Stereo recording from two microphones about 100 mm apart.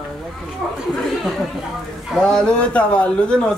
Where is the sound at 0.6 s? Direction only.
Centre (ahead or behind).